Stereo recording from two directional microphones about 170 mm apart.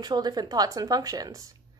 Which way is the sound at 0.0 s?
25° right (ahead or behind).